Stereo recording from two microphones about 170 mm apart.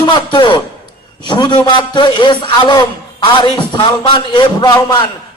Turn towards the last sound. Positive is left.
turn(degrees=25)  # may be behind; listen again after turning